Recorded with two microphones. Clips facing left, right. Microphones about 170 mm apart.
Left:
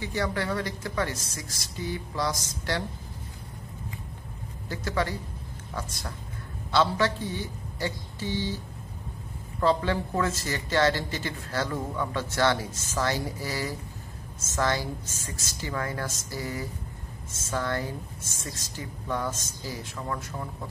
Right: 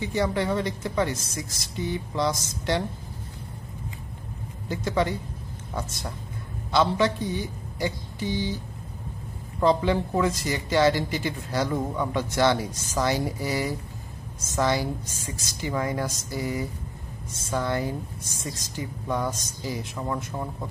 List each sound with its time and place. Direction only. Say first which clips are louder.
0.0 s speech: right 4 dB; 20° right (ahead or behind)
4.6 s speech: right 4 dB; 20° right (ahead or behind)
6.7 s a woman's voice: right 2 dB; 15° right (ahead or behind)
9.6 s speech: right 3 dB; 15° right (ahead or behind)